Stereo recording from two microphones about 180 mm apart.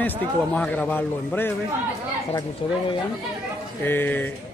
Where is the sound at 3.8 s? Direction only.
10° left (ahead or behind).